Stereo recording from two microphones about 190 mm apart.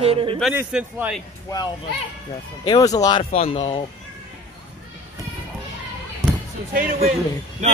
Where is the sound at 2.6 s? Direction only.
20° left (ahead or behind).